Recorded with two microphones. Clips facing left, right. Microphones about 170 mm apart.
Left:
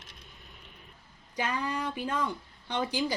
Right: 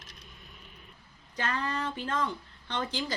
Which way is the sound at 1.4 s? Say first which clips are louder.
Left 1 dB; 10° left (ahead or behind).